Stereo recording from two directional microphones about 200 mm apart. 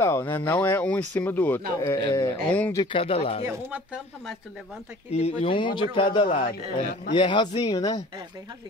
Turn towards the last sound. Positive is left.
turn(degrees=20)  # may be behind; listen again after turning